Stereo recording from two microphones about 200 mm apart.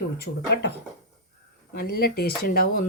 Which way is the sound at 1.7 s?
50° left (ahead or behind).